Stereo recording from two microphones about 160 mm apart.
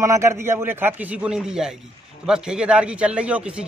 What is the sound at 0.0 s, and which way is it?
A man's voice, 15° right (ahead or behind).